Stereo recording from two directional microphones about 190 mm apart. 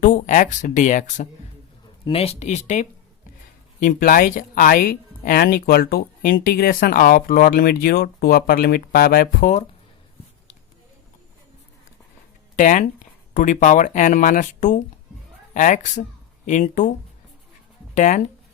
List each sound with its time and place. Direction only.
0.0 s speech: 45° left (ahead or behind)
12.5 s speech: 40° left (ahead or behind)
17.9 s speech: 40° left (ahead or behind)